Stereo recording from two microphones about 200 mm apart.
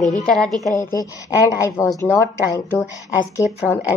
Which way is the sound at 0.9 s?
15° left (ahead or behind).